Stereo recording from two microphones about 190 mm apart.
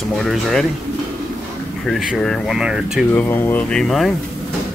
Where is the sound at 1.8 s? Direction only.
Centre (ahead or behind).